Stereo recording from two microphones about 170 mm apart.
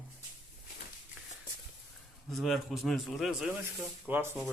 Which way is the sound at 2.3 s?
Centre (ahead or behind).